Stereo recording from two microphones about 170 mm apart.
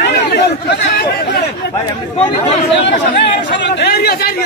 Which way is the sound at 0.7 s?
80° left.